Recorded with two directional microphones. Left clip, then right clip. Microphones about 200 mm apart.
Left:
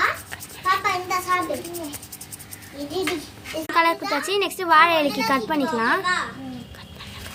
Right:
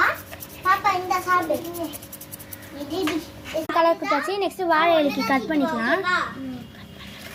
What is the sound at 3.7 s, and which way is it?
A child's voice, 35° left (ahead or behind).